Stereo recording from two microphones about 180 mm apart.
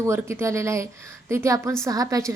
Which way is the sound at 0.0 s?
15° right (ahead or behind).